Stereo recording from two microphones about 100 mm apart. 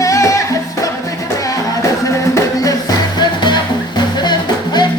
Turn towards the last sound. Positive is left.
turn(degrees=45)  # may be behind; listen again after turning